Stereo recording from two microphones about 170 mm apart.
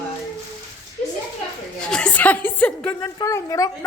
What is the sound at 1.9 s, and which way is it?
Speech, 5° left (ahead or behind).